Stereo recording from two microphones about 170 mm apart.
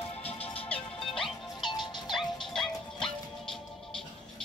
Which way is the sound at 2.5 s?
Centre (ahead or behind).